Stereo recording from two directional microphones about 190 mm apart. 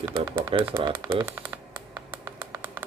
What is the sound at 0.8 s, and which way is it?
Speech, 25° right (ahead or behind).